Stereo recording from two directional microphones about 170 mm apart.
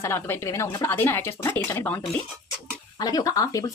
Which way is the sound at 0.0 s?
15° left (ahead or behind).